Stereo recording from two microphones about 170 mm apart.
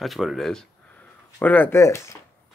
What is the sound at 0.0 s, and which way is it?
Speech, centre (ahead or behind).